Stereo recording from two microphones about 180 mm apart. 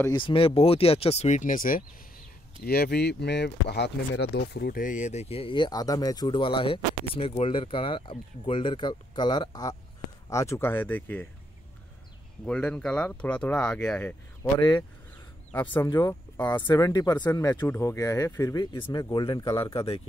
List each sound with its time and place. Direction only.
0.1 s speech: 30° left (ahead or behind); by 11.2 s 10° left (ahead or behind)
12.4 s speech: 5° left (ahead or behind)
15.5 s speech: 10° left (ahead or behind); by 20.0 s 30° left (ahead or behind)